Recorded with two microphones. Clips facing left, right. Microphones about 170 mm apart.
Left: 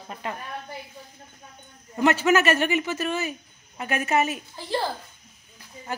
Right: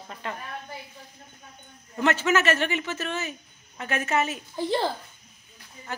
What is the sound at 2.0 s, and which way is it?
A woman's voice, 10° left (ahead or behind).